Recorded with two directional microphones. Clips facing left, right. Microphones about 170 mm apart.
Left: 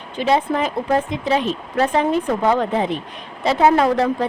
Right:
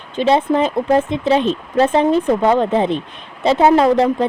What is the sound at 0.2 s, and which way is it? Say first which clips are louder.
A woman's voice: right 4 dB; 25° right (ahead or behind).